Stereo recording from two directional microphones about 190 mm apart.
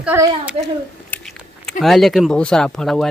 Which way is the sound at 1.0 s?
5° left (ahead or behind).